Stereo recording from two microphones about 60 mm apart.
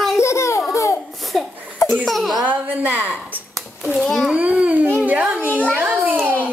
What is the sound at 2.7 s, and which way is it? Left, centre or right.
Speech, right.